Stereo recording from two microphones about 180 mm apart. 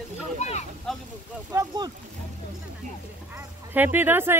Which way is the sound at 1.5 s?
20° right (ahead or behind).